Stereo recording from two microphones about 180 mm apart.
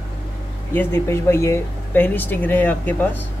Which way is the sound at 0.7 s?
10° left (ahead or behind).